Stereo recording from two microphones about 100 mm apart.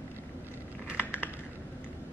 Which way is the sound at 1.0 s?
20° left (ahead or behind).